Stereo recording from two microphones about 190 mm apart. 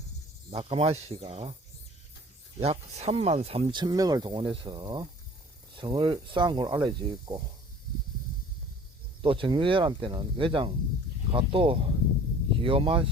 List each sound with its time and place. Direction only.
0.5 s speech: 30° right (ahead or behind)
2.6 s speech: 35° right (ahead or behind)
9.2 s speech: 25° right (ahead or behind)